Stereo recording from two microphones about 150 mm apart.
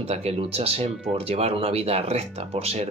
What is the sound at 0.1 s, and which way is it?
Speech, 45° right (ahead or behind).